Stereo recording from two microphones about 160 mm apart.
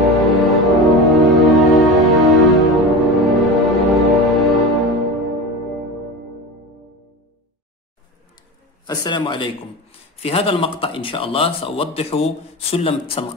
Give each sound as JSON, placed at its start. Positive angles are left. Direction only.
{"t": 0.0, "sound": "music", "side_deg": 0}
{"t": 8.8, "sound": "a man's voice", "side_deg": 25}